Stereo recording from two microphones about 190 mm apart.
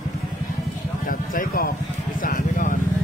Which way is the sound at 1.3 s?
50° left (ahead or behind).